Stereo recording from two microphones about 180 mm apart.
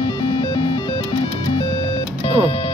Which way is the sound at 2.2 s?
30° left (ahead or behind).